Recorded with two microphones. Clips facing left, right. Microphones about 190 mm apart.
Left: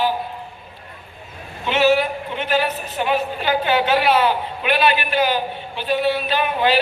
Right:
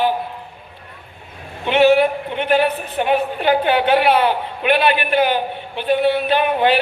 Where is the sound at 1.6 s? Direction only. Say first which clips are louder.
Right 4 dB; 60° right (ahead or behind).